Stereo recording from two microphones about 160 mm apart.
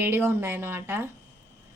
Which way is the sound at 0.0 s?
10° right (ahead or behind).